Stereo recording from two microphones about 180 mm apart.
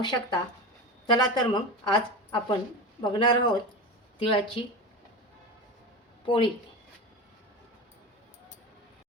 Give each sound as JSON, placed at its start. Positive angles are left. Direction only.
{"t": 0.0, "sound": "speech", "side_deg": 25}
{"t": 6.2, "sound": "speech", "side_deg": 30}